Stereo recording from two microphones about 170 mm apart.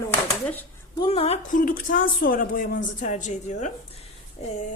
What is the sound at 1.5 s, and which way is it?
A woman's voice, 50° left (ahead or behind).